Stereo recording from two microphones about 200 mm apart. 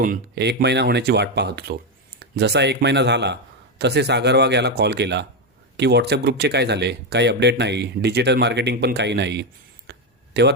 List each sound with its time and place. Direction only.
0.0 s speech: 50° right (ahead or behind)